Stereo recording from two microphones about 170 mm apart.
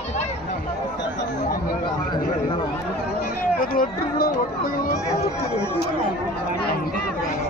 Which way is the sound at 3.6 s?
60° left (ahead or behind).